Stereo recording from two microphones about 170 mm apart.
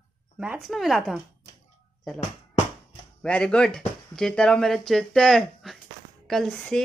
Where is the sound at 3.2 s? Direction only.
5° left (ahead or behind).